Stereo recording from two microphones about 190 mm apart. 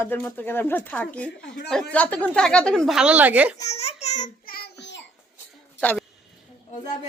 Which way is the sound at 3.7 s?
35° left (ahead or behind).